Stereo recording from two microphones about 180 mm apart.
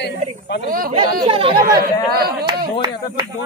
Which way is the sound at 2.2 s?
60° right (ahead or behind).